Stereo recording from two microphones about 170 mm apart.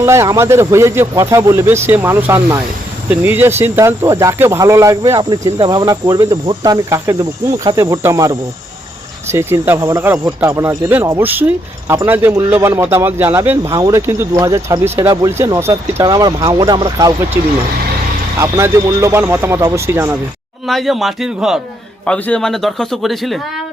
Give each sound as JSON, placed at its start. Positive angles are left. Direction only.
{"t": 0.0, "sound": "speech", "side_deg": -15}
{"t": 20.7, "sound": "a man's voice", "side_deg": 0}